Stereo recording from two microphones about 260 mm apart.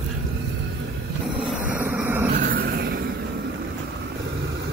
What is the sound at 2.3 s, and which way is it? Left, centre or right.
Vehicle, right.